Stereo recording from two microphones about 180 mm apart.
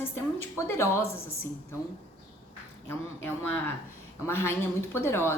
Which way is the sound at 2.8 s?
10° left (ahead or behind).